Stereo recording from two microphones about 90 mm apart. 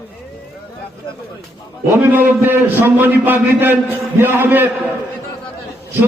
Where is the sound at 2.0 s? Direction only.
20° right (ahead or behind).